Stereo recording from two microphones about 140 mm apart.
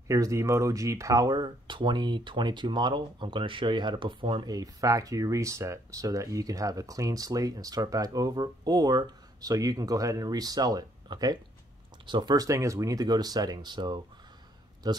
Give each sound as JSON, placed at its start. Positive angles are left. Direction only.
{"t": 0.1, "sound": "speech", "side_deg": -25}